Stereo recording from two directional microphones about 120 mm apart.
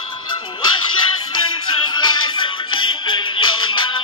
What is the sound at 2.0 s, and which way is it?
Music, 40° left (ahead or behind).